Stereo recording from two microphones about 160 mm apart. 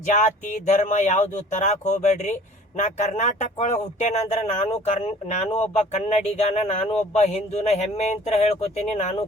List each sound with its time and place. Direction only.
0.7 s speech: 50° left (ahead or behind)